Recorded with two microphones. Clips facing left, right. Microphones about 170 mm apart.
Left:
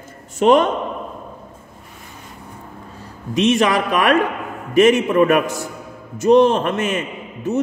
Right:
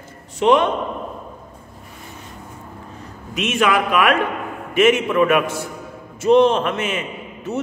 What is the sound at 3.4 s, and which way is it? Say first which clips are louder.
A man's voice: left 3 dB; 35° left (ahead or behind).